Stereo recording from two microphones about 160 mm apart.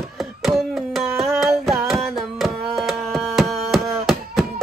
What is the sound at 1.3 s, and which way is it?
Singing, centre (ahead or behind).